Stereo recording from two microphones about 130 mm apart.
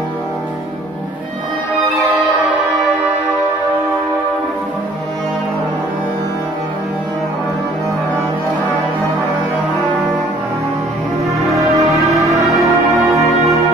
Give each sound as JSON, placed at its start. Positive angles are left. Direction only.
{"t": 11.6, "sound": "music", "side_deg": -25}
{"t": 12.5, "sound": "music", "side_deg": 0}
{"t": 13.4, "sound": "brass instrument", "side_deg": 0}